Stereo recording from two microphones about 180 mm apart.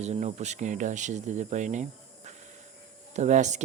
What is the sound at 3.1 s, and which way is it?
Speech, 40° right (ahead or behind).